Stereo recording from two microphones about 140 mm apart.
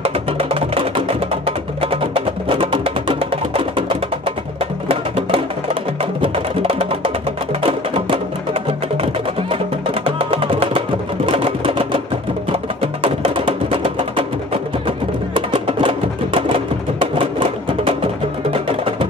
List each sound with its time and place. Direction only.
0.0 s music: 45° right (ahead or behind)
8.6 s music: 40° right (ahead or behind)
11.2 s a sound: 40° right (ahead or behind)
12.4 s music: 40° right (ahead or behind)